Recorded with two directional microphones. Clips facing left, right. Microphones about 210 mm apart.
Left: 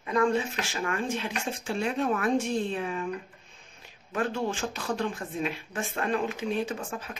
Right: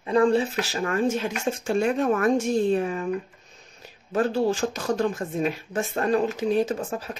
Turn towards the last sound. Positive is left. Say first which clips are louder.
# right 6 dB
turn(degrees=-40)  # may be behind; listen again after turning